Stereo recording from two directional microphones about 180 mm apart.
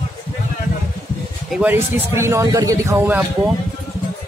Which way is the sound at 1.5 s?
10° right (ahead or behind).